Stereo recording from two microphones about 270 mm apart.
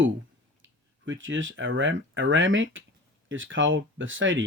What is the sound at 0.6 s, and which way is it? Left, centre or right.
Speech, right.